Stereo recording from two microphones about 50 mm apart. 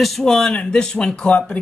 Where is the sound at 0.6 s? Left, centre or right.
Centre.